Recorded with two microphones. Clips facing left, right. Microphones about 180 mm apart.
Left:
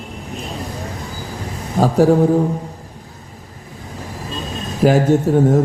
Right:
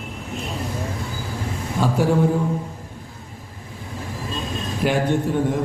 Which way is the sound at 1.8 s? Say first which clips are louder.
Left 6 dB; 40° left (ahead or behind).